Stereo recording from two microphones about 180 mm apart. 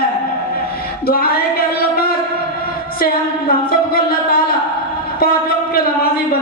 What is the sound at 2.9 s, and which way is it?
Music, 55° left (ahead or behind).